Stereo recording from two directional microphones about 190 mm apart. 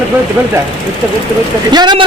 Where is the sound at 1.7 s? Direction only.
25° right (ahead or behind).